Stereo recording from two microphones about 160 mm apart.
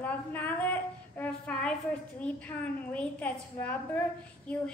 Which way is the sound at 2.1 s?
10° left (ahead or behind).